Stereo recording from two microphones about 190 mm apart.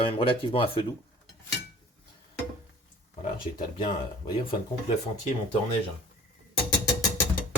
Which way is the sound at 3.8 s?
25° left (ahead or behind).